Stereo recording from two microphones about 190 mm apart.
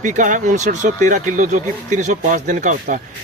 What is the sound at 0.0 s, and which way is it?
Speech, 40° right (ahead or behind).